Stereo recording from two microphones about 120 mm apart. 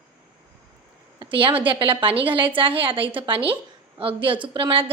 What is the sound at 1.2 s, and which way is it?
A woman's voice, 45° right (ahead or behind).